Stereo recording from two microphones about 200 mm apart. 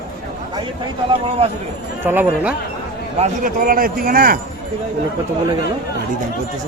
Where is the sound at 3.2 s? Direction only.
45° right (ahead or behind).